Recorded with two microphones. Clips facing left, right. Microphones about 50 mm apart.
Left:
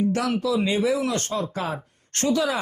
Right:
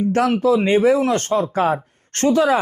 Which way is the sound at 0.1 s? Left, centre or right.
Right.